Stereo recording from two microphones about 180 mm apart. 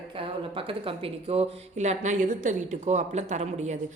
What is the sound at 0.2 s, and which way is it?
Speech, 30° right (ahead or behind).